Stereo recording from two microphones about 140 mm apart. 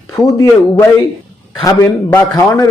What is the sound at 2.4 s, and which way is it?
Speech, 20° left (ahead or behind).